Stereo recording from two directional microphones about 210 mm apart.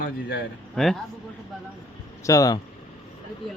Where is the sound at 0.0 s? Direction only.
55° left (ahead or behind).